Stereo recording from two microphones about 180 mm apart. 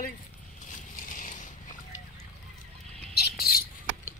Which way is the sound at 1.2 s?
50° left (ahead or behind).